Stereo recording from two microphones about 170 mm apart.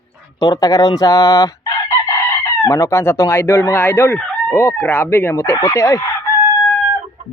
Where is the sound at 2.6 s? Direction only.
20° left (ahead or behind).